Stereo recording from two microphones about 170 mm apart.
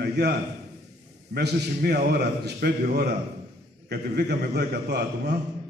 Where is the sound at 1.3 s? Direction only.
70° right (ahead or behind).